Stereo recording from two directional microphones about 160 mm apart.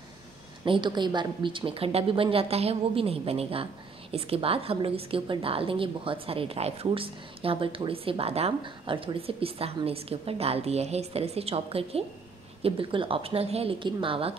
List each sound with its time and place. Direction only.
0.7 s speech: 30° right (ahead or behind)